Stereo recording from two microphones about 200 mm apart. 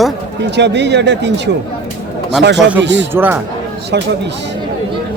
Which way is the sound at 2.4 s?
60° right (ahead or behind).